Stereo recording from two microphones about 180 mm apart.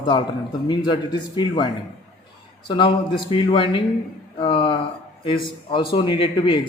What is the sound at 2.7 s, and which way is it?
Speech, 25° left (ahead or behind).